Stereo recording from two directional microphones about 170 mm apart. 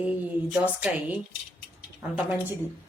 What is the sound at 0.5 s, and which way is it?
Speech, 5° right (ahead or behind).